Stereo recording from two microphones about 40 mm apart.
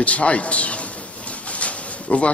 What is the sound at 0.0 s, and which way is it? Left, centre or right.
A man's voice, left.